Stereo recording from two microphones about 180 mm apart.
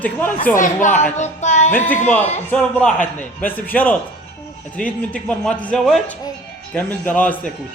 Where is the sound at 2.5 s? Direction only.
5° left (ahead or behind).